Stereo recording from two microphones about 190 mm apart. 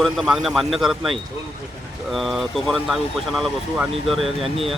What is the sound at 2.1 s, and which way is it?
Speech, centre (ahead or behind).